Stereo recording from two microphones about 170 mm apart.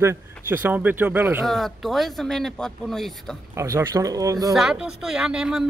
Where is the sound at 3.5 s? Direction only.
20° right (ahead or behind).